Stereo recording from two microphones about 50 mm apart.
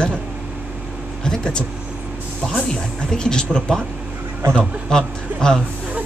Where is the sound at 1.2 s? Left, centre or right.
Centre.